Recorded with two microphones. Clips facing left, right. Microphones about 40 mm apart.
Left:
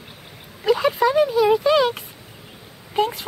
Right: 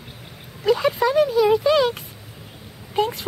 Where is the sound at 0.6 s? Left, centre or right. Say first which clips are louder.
Left 1 dB; centre.